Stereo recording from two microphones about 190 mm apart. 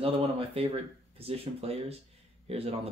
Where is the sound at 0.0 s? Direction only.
30° right (ahead or behind).